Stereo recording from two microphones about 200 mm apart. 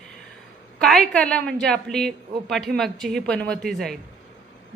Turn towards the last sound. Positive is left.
turn(degrees=0)  # may be behind; listen again after turning